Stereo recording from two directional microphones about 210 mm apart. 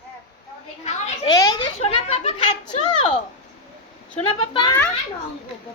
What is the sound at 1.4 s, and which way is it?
Speech, 20° left (ahead or behind).